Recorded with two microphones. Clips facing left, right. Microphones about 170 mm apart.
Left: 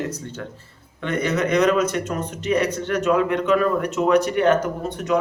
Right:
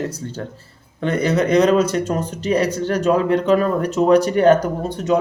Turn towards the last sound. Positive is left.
turn(degrees=-30)  # may be behind; listen again after turning